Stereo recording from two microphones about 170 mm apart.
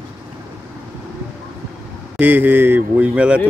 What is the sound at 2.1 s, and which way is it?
Speech, 10° right (ahead or behind).